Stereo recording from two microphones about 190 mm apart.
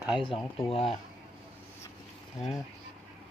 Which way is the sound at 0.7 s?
30° left (ahead or behind).